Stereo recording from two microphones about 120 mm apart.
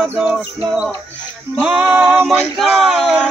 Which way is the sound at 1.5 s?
15° right (ahead or behind).